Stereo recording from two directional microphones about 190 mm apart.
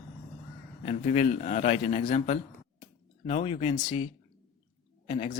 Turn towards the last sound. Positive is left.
turn(degrees=35)  # may be behind; listen again after turning